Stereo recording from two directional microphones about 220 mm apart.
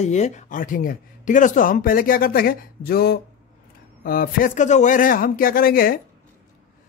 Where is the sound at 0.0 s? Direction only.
30° left (ahead or behind).